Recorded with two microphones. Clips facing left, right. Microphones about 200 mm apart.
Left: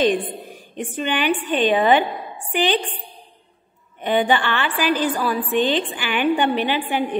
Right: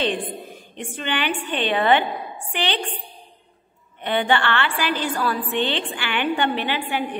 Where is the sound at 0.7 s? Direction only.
15° left (ahead or behind).